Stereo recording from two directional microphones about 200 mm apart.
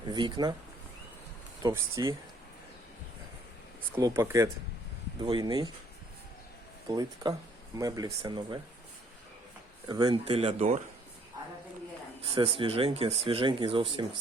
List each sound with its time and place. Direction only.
0.1 s speech: 20° right (ahead or behind)
1.6 s speech: 15° right (ahead or behind)
3.9 s speech: 15° right (ahead or behind)
6.9 s speech: 20° right (ahead or behind)
9.8 s speech: 20° right (ahead or behind)
12.2 s speech: 25° right (ahead or behind)